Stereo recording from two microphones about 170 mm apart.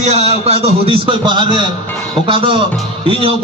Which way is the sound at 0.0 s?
40° right (ahead or behind).